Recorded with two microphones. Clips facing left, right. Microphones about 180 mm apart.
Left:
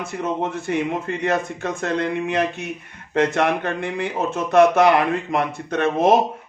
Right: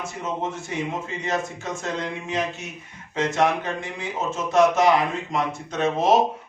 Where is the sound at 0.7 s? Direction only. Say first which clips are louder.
Left 6 dB; 60° left (ahead or behind).